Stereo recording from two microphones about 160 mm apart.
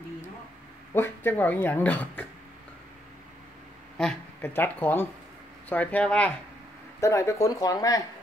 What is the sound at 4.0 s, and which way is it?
Speech, 5° left (ahead or behind).